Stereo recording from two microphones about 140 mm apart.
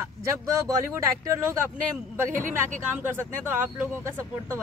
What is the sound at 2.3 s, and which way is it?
Speech, 70° right (ahead or behind).